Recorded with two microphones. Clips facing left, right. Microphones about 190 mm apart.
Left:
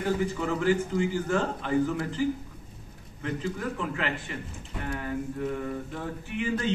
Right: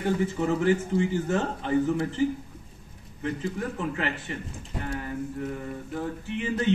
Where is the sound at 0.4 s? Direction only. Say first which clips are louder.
Right 2 dB; 25° right (ahead or behind).